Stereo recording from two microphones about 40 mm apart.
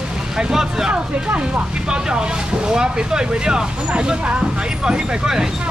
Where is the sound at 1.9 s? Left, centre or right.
Right.